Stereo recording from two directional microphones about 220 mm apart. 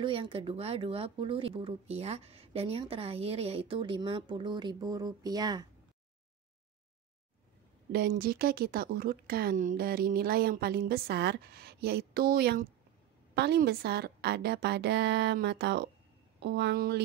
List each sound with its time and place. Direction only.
0.0 s speech: 25° right (ahead or behind)
7.9 s speech: 45° right (ahead or behind)